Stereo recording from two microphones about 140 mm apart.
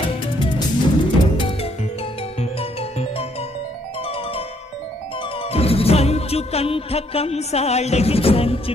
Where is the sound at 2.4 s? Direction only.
45° left (ahead or behind).